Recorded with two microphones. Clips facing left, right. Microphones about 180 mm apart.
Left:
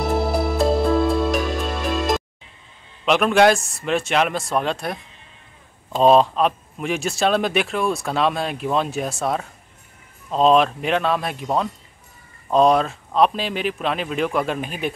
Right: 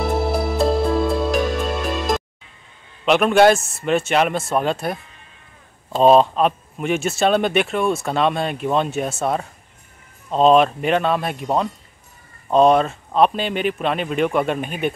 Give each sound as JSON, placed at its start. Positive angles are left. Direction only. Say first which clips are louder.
{"t": 0.5, "sound": "music", "louder": "left 1 dB", "side_deg": 0}
{"t": 3.1, "sound": "speech", "louder": "right 2 dB", "side_deg": 0}